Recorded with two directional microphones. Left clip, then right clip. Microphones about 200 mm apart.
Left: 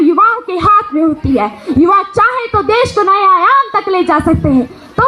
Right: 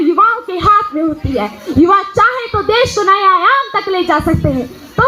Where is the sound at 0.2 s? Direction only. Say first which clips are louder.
Left 1 dB; 25° left (ahead or behind).